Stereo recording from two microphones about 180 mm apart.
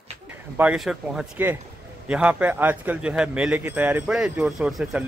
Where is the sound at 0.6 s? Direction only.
5° right (ahead or behind).